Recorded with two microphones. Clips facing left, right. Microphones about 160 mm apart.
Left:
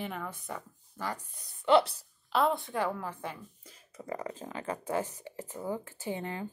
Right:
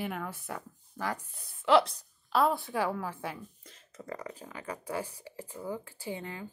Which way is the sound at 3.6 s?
10° left (ahead or behind).